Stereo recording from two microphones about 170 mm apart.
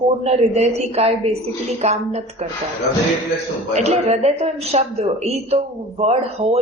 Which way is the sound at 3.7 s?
40° right (ahead or behind).